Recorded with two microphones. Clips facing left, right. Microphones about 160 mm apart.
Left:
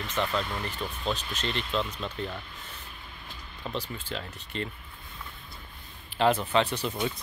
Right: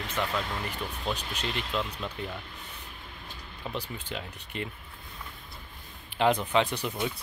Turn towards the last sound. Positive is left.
turn(degrees=-15)  # may be behind; listen again after turning